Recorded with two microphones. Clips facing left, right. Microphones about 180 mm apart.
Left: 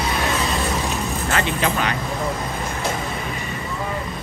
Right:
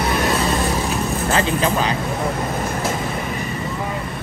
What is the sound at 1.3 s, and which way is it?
Speech, 30° right (ahead or behind).